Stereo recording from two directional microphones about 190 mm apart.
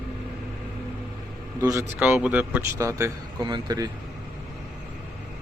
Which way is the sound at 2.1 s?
5° right (ahead or behind).